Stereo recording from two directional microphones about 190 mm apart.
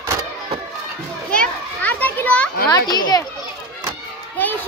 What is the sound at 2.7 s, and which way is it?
Speech, 20° left (ahead or behind).